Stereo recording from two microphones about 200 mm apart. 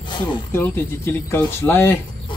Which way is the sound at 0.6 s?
10° left (ahead or behind).